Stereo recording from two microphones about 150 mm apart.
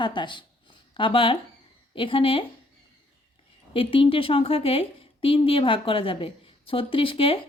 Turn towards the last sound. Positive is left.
turn(degrees=35)  # may be behind; listen again after turning